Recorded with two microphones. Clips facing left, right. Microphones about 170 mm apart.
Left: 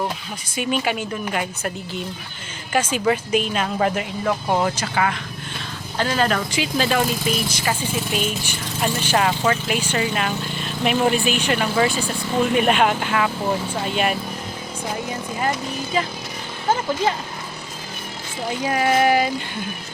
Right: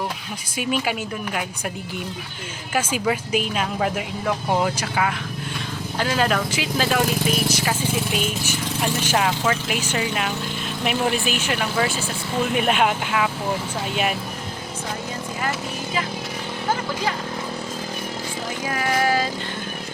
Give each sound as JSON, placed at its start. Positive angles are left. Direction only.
{"t": 0.5, "sound": "speech", "side_deg": -5}
{"t": 2.7, "sound": "speech", "side_deg": -5}
{"t": 18.6, "sound": "speech", "side_deg": 20}